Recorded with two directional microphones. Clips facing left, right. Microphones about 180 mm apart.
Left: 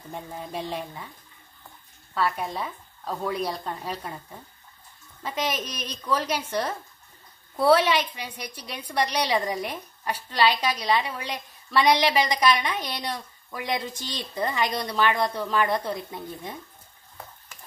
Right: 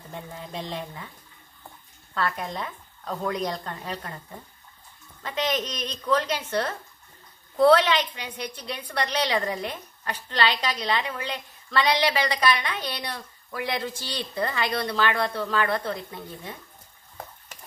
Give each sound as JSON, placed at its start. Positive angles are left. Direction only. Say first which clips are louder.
{"t": 0.5, "sound": "a woman's voice", "louder": "left 2 dB", "side_deg": 10}
{"t": 2.1, "sound": "a woman's voice", "louder": "left 2 dB", "side_deg": 10}
{"t": 5.2, "sound": "a woman's voice", "louder": "right 2 dB", "side_deg": 10}